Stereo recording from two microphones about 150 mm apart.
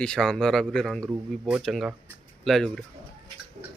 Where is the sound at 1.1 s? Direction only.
10° right (ahead or behind).